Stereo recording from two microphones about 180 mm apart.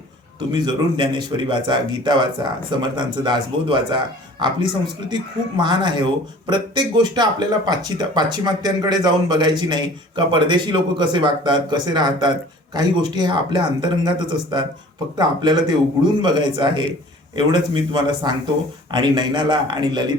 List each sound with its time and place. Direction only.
0.3 s speech: 25° right (ahead or behind)
15.2 s speech: 25° right (ahead or behind)